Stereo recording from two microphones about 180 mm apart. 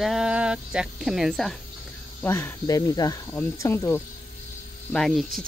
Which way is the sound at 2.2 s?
10° left (ahead or behind).